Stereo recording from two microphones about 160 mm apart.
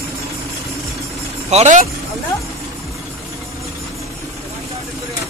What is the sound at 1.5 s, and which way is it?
Speech, 45° right (ahead or behind).